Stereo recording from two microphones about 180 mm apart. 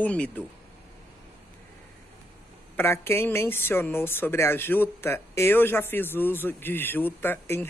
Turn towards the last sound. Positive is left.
turn(degrees=10)  # may be behind; listen again after turning